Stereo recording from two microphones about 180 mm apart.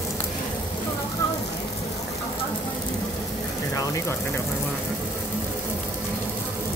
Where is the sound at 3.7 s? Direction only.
20° left (ahead or behind).